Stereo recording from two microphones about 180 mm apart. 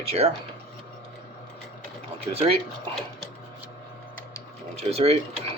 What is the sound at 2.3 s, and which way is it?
Speech, 35° right (ahead or behind).